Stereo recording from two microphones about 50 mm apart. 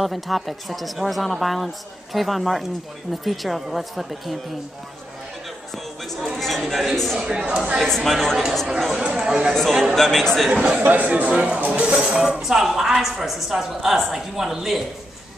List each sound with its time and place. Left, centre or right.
0.0 s speech: centre
6.0 s speech: centre
7.2 s speech: centre
7.8 s speech: centre
9.0 s a woman's voice: centre
9.9 s speech: centre
10.5 s a woman's voice: centre
10.8 s speech: right
11.1 s speech: right
12.2 s a woman's voice: centre